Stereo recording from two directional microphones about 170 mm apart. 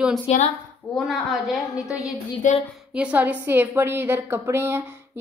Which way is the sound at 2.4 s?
50° left (ahead or behind).